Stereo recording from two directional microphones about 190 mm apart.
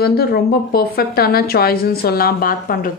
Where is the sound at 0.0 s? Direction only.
55° left (ahead or behind).